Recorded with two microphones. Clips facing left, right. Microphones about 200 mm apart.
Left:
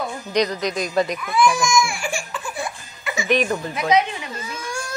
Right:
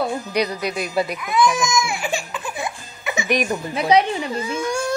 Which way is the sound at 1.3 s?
20° right (ahead or behind).